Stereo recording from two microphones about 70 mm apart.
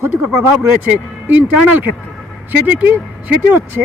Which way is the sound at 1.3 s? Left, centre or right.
Right.